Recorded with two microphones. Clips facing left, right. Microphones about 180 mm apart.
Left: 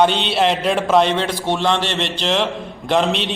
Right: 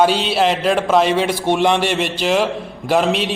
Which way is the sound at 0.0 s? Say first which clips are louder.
Right 1 dB; 5° right (ahead or behind).